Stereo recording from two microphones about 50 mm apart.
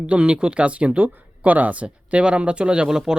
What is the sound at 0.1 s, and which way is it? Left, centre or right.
Speech, right.